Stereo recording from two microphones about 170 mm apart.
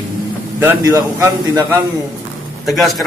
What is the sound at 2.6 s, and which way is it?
Speech, centre (ahead or behind).